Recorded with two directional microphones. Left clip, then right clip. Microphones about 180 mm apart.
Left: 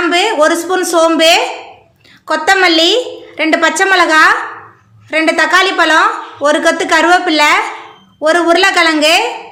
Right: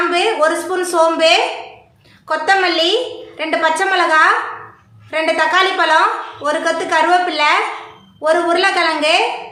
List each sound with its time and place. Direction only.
0.1 s a woman's voice: 55° left (ahead or behind)